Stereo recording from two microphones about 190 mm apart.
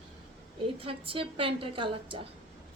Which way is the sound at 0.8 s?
30° right (ahead or behind).